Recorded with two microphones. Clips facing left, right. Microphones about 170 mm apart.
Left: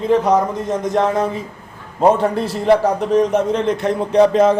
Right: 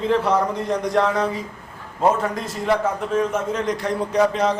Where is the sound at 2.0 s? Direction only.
30° left (ahead or behind).